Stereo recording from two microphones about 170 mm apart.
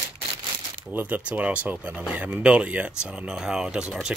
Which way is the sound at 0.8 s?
10° right (ahead or behind).